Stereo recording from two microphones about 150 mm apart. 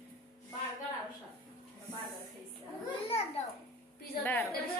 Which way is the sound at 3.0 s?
40° left (ahead or behind).